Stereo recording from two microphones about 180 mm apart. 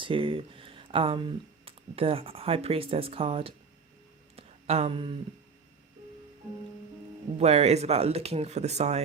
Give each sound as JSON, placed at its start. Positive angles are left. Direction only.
{"t": 0.0, "sound": "speech", "side_deg": -30}
{"t": 4.4, "sound": "a sound", "side_deg": -35}
{"t": 7.3, "sound": "speech", "side_deg": -35}